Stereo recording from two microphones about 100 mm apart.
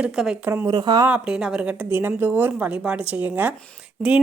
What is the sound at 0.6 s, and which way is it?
Speech, 40° right (ahead or behind).